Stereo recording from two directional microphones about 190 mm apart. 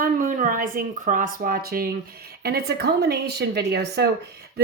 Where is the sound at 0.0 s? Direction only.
45° right (ahead or behind).